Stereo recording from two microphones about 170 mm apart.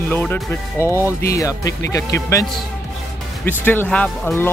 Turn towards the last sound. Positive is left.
turn(degrees=5)  # may be behind; listen again after turning